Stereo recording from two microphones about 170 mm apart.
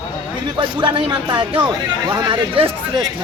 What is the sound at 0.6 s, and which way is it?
A man's voice, 30° right (ahead or behind).